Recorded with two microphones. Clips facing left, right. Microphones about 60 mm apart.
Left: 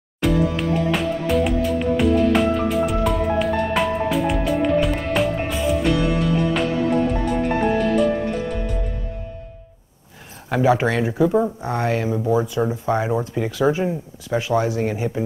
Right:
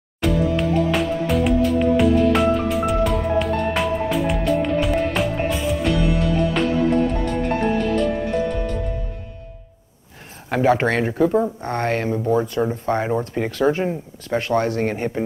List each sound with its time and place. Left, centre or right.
0.2 s music: centre
10.8 s speech: right
11.1 s speech: centre
13.7 s speech: centre
14.5 s speech: centre
14.8 s speech: right